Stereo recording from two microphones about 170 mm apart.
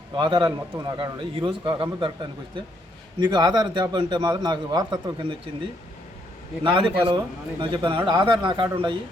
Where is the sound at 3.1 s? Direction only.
25° right (ahead or behind).